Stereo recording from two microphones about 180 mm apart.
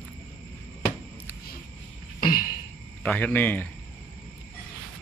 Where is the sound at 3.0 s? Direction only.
10° left (ahead or behind).